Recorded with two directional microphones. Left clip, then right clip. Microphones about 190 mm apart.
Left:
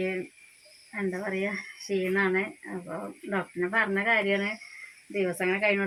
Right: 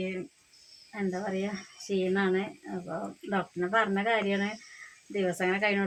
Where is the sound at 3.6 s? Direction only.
5° left (ahead or behind).